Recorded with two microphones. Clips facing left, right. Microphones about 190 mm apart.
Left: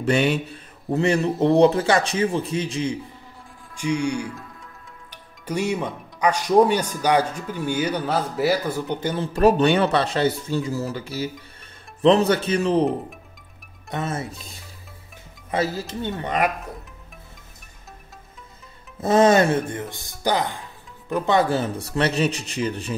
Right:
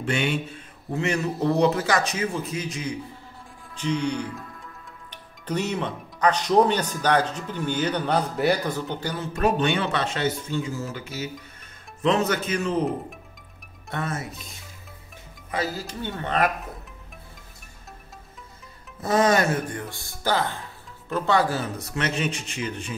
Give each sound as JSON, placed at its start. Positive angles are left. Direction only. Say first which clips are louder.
{"t": 0.0, "sound": "speech", "louder": "left 5 dB", "side_deg": 40}
{"t": 3.7, "sound": "speech", "louder": "left 2 dB", "side_deg": 10}
{"t": 9.1, "sound": "speech", "louder": "left 6 dB", "side_deg": 30}
{"t": 13.8, "sound": "speech", "louder": "left 3 dB", "side_deg": 20}
{"t": 15.5, "sound": "speech", "louder": "left 4 dB", "side_deg": 25}
{"t": 18.9, "sound": "speech", "louder": "left 5 dB", "side_deg": 25}